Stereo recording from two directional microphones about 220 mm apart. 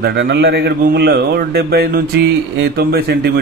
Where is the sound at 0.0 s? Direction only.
55° right (ahead or behind).